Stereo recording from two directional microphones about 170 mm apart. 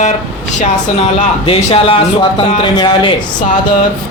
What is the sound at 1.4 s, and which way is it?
Speech, 35° left (ahead or behind).